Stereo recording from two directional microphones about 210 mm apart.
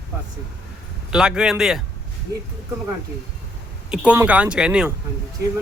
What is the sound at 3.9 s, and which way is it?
A man's voice, 5° right (ahead or behind).